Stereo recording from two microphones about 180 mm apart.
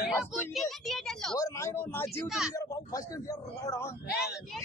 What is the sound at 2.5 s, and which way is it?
Speech, 20° left (ahead or behind).